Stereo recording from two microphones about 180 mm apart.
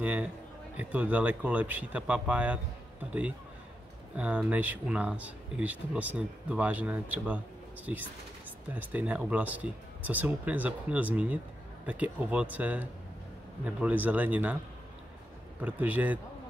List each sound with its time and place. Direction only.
0.0 s speech: 10° right (ahead or behind)
8.7 s speech: 10° right (ahead or behind)
15.6 s speech: 10° right (ahead or behind)